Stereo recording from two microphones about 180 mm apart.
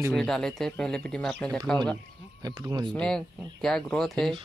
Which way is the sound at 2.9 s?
5° left (ahead or behind).